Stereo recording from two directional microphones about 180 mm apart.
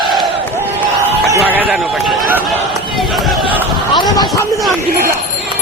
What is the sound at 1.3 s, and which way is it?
Music, 10° right (ahead or behind).